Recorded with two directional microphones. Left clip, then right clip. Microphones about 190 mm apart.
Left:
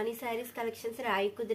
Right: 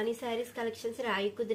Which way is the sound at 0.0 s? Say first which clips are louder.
Right 1 dB; 40° left (ahead or behind).